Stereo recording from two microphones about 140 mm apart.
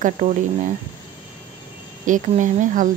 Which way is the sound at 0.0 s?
60° right (ahead or behind).